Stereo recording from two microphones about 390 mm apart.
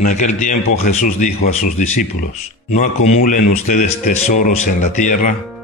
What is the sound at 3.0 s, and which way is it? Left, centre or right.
Speech, centre.